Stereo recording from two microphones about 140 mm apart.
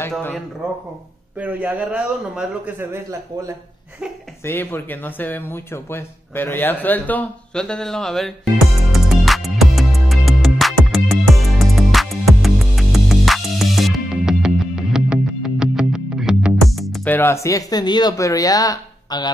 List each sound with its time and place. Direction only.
1.4 s a man's voice: 10° right (ahead or behind)
4.5 s speech: 15° left (ahead or behind)
8.9 s music: centre (ahead or behind)
17.0 s speech: 15° left (ahead or behind); by 19.3 s 30° left (ahead or behind)